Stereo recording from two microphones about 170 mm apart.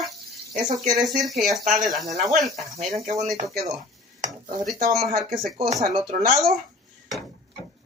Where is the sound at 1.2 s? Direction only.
Centre (ahead or behind).